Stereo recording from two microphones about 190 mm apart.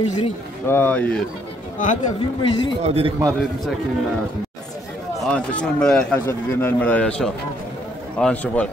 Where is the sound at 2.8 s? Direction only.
30° right (ahead or behind).